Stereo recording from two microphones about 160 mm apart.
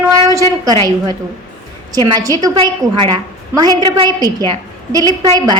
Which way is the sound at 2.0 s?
25° right (ahead or behind).